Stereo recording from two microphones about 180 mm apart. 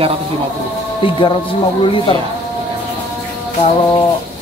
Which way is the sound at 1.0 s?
30° left (ahead or behind).